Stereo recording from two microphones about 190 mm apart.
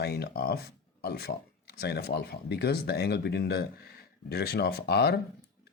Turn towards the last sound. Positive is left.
turn(degrees=60)  # may be behind; listen again after turning